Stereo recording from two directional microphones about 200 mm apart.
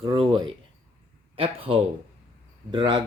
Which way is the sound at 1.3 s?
25° right (ahead or behind).